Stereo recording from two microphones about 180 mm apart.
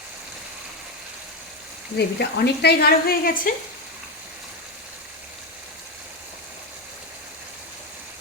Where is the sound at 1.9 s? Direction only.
65° left (ahead or behind).